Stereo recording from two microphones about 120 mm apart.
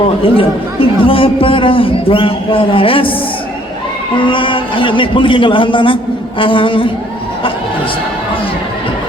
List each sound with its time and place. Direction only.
0.2 s a man's voice: 50° left (ahead or behind)
4.2 s a man's voice: 45° left (ahead or behind)